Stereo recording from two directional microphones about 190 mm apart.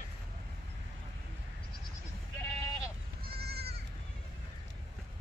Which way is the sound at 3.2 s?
55° right (ahead or behind).